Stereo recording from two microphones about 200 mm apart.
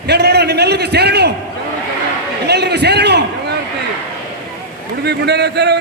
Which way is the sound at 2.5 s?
55° right (ahead or behind).